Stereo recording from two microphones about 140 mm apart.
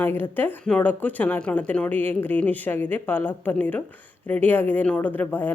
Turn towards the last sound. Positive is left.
turn(degrees=15)  # may be behind; listen again after turning